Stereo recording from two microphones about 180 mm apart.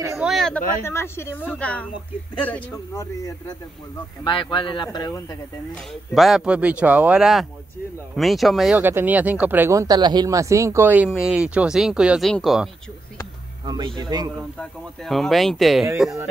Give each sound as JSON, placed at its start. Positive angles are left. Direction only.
{"t": 0.2, "sound": "speech", "side_deg": 0}
{"t": 0.8, "sound": "speech", "side_deg": 15}
{"t": 3.0, "sound": "speech", "side_deg": 20}
{"t": 6.1, "sound": "speech", "side_deg": 0}
{"t": 13.7, "sound": "a man's voice", "side_deg": -25}
{"t": 14.6, "sound": "speech", "side_deg": 0}